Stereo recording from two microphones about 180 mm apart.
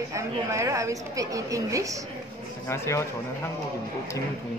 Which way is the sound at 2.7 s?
15° left (ahead or behind).